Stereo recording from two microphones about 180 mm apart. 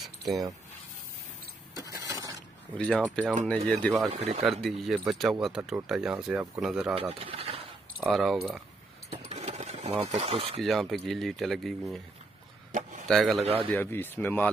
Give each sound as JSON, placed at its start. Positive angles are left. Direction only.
{"t": 1.8, "sound": "a sound", "side_deg": -20}
{"t": 2.8, "sound": "speech", "side_deg": 5}
{"t": 4.1, "sound": "a man's voice", "side_deg": -35}
{"t": 4.5, "sound": "speech", "side_deg": 0}
{"t": 7.0, "sound": "speech", "side_deg": -35}
{"t": 8.0, "sound": "speech", "side_deg": 0}
{"t": 9.3, "sound": "a sound", "side_deg": -35}
{"t": 10.6, "sound": "speech", "side_deg": 0}
{"t": 13.1, "sound": "speech", "side_deg": 0}
{"t": 13.4, "sound": "a man's voice", "side_deg": -35}
{"t": 13.7, "sound": "speech", "side_deg": 10}